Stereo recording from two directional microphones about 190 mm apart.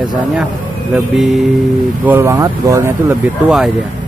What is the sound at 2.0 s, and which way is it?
Speech, 10° right (ahead or behind).